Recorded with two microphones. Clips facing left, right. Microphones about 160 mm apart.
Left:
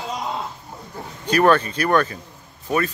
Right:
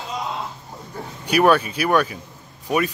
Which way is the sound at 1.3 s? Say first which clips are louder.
Even; 10° right (ahead or behind).